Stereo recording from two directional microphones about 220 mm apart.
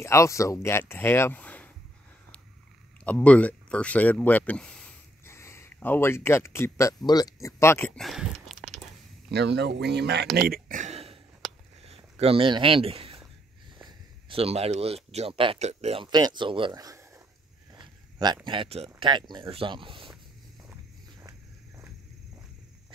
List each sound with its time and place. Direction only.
0.0 s speech: 15° left (ahead or behind)
3.1 s speech: 5° left (ahead or behind)
9.3 s speech: 50° right (ahead or behind)
10.3 s a sound: 40° right (ahead or behind)
11.9 s speech: 25° right (ahead or behind)
17.7 s a sound: 20° right (ahead or behind)
18.9 s speech: 20° right (ahead or behind)
21.2 s walk: 15° right (ahead or behind)